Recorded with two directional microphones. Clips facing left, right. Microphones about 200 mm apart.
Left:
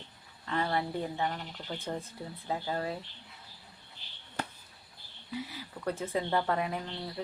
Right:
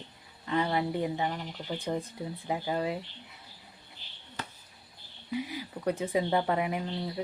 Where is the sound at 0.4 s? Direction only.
15° right (ahead or behind).